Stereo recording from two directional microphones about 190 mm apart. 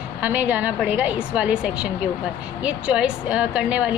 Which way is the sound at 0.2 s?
10° right (ahead or behind).